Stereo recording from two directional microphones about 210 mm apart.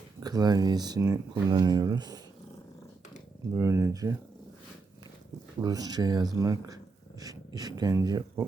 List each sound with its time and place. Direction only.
0.2 s speech: 20° right (ahead or behind)
3.5 s speech: 15° right (ahead or behind)
5.5 s speech: 20° right (ahead or behind)
7.2 s a sound: 20° right (ahead or behind)
7.8 s speech: 15° right (ahead or behind)